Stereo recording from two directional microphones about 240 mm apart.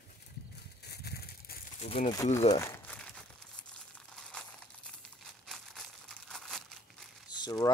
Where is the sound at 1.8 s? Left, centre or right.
Left.